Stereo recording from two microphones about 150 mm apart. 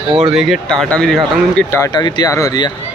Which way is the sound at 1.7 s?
25° left (ahead or behind).